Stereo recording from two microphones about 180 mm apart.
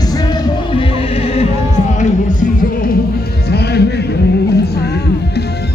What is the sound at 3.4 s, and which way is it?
Music, 65° left (ahead or behind).